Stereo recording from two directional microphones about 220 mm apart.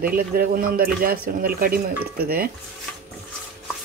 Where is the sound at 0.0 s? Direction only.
40° right (ahead or behind).